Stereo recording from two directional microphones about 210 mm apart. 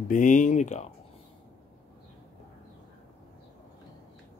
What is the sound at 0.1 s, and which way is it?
Speech, 40° left (ahead or behind).